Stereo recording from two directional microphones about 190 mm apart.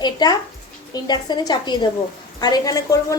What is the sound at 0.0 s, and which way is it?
A woman's voice, 20° left (ahead or behind).